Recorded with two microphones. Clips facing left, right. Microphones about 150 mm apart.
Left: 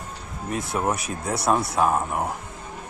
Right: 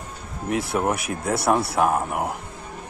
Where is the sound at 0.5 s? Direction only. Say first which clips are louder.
Right 2 dB; 70° right (ahead or behind).